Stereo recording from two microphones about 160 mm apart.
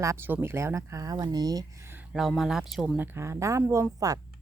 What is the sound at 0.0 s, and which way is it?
Speech, 15° right (ahead or behind).